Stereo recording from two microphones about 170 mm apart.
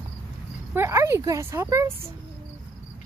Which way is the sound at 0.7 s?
15° right (ahead or behind).